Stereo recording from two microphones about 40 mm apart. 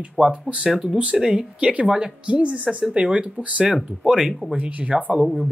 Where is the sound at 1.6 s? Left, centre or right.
Right.